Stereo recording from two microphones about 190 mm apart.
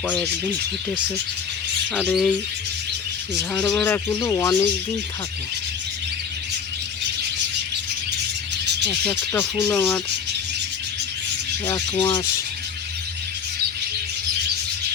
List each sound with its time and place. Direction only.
2.0 s bird: centre (ahead or behind)
3.5 s speech: 10° left (ahead or behind)
9.3 s speech: 10° left (ahead or behind)
11.6 s speech: 20° left (ahead or behind)